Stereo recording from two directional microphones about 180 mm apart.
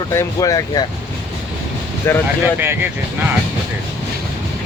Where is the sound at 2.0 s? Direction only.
10° left (ahead or behind).